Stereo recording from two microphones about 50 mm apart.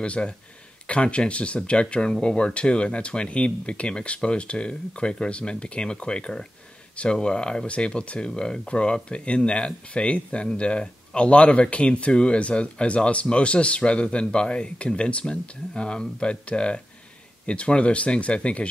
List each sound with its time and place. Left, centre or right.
0.0 s speech: left